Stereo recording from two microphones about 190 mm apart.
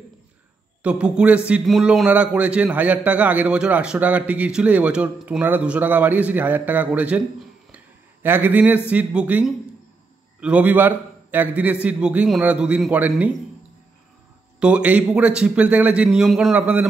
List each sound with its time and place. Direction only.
0.8 s a man's voice: 5° right (ahead or behind)
7.7 s a sound: 10° right (ahead or behind)
8.9 s a man's voice: 5° right (ahead or behind)
14.6 s a man's voice: 5° right (ahead or behind)